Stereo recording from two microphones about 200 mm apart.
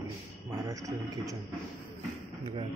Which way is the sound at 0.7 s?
15° right (ahead or behind).